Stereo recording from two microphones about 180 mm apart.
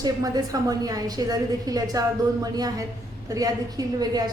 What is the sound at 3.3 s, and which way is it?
A woman's voice, 20° right (ahead or behind).